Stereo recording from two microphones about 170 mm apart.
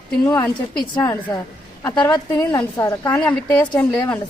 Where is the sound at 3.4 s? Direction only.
20° left (ahead or behind).